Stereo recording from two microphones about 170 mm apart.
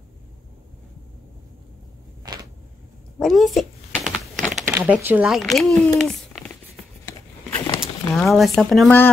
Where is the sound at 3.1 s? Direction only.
Centre (ahead or behind).